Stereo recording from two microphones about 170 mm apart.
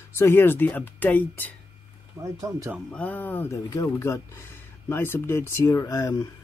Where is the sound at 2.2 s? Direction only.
20° right (ahead or behind).